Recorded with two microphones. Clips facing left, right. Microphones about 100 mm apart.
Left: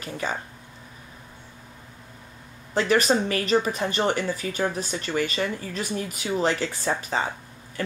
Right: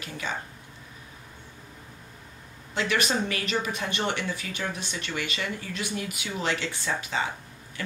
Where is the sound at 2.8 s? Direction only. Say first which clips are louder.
Left 6 dB; 40° left (ahead or behind).